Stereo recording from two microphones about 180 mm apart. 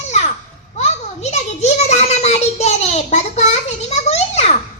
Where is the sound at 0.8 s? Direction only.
40° left (ahead or behind).